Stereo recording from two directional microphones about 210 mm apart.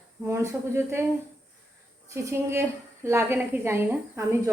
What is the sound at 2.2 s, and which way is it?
Speech, 15° right (ahead or behind).